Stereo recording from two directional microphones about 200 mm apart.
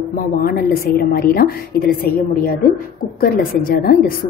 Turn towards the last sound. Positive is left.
turn(degrees=50)  # may be behind; listen again after turning